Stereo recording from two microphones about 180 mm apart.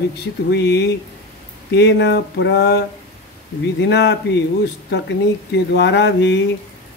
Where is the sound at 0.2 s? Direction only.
70° left (ahead or behind).